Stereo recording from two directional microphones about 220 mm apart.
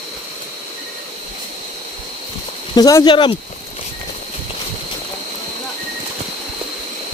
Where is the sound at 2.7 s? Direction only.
15° left (ahead or behind).